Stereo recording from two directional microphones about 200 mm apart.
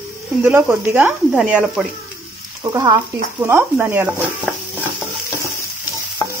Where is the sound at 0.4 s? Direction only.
10° right (ahead or behind).